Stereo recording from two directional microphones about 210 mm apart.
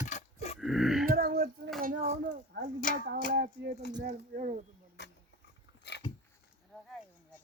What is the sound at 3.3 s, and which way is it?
Speech, 50° right (ahead or behind).